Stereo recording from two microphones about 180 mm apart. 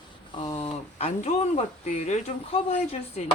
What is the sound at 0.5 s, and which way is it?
Speech, 35° left (ahead or behind).